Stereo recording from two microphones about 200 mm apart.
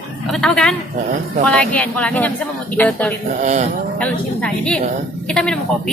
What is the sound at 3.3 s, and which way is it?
Speech, 35° right (ahead or behind).